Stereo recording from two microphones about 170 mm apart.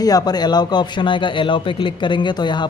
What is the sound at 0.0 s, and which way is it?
Speech, 25° left (ahead or behind).